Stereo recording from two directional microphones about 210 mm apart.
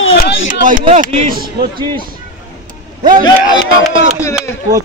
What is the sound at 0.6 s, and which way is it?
Speech, 40° right (ahead or behind).